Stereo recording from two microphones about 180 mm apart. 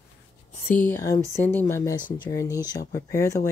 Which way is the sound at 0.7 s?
10° left (ahead or behind).